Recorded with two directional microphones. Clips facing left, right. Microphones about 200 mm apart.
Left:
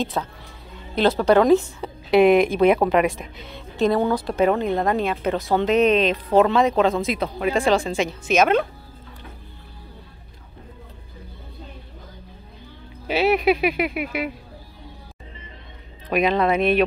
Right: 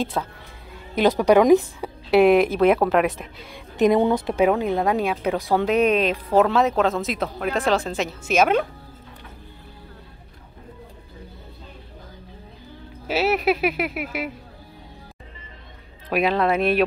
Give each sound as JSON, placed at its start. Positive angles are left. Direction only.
{"t": 0.2, "sound": "a woman's voice", "side_deg": 0}
{"t": 0.9, "sound": "a woman's voice", "side_deg": -15}
{"t": 3.7, "sound": "speech", "side_deg": -20}
{"t": 4.3, "sound": "a woman's voice", "side_deg": -10}
{"t": 13.0, "sound": "a woman's voice", "side_deg": -5}
{"t": 16.1, "sound": "a woman's voice", "side_deg": -5}